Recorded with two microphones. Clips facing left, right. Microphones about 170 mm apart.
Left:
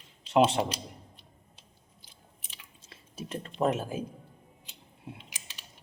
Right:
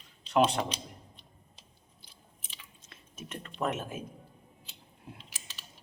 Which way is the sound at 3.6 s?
30° left (ahead or behind).